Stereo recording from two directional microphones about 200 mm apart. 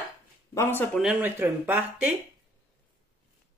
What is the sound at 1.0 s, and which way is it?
Speech, 10° right (ahead or behind).